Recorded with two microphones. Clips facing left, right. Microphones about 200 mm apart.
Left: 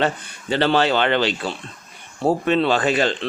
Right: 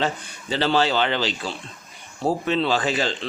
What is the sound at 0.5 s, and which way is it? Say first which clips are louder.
Speech: left 3 dB; 60° left (ahead or behind).